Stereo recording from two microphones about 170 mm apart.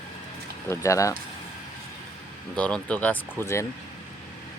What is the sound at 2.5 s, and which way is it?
Speech, 5° left (ahead or behind).